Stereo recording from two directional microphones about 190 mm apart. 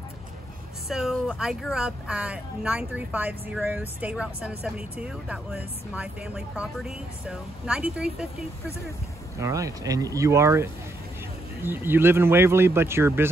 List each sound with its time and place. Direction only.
0.8 s speech: centre (ahead or behind)
9.4 s speech: 15° right (ahead or behind)